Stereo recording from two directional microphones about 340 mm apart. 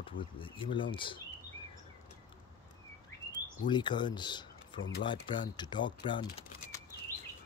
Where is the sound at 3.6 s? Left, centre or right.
Centre.